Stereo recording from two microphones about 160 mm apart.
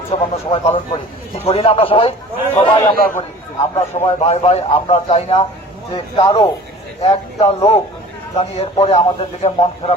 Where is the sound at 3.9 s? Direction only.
40° left (ahead or behind).